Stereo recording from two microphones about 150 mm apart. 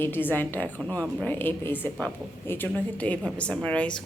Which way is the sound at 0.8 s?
20° right (ahead or behind).